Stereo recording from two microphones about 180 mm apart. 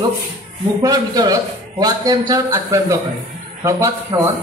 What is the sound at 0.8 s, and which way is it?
A man's voice, 20° right (ahead or behind).